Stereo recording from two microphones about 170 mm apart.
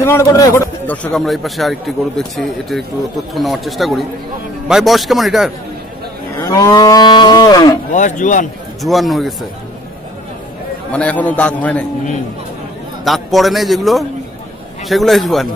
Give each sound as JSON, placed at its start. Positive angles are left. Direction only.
{"t": 0.0, "sound": "a man's voice", "side_deg": 15}
{"t": 6.4, "sound": "cattle", "side_deg": 20}
{"t": 7.9, "sound": "a man's voice", "side_deg": 45}
{"t": 8.8, "sound": "a man's voice", "side_deg": 0}
{"t": 10.9, "sound": "a man's voice", "side_deg": 10}
{"t": 13.0, "sound": "a man's voice", "side_deg": 0}